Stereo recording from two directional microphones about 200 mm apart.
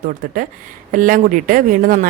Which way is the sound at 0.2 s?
45° right (ahead or behind).